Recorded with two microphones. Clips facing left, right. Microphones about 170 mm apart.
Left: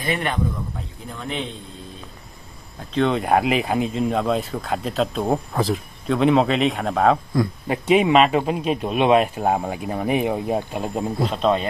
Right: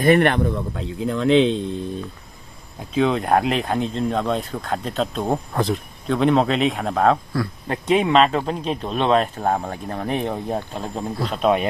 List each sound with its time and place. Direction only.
0.0 s speech: 60° right (ahead or behind); by 1.6 s 90° right
2.9 s a man's voice: centre (ahead or behind)
11.2 s speech: 5° right (ahead or behind)